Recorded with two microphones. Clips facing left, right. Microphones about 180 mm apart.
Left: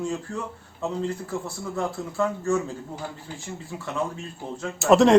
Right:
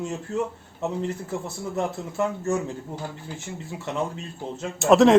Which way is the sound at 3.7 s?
20° right (ahead or behind).